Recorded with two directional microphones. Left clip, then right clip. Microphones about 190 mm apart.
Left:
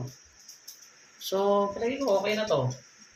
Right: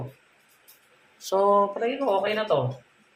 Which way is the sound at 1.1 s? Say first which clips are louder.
Right 5 dB; 15° left (ahead or behind).